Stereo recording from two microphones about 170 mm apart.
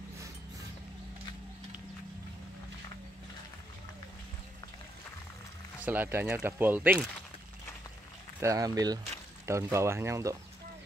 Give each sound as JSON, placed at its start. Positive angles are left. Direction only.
{"t": 5.9, "sound": "speech", "side_deg": -10}
{"t": 8.4, "sound": "speech", "side_deg": -20}